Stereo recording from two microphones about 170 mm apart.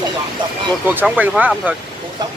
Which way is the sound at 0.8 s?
10° right (ahead or behind).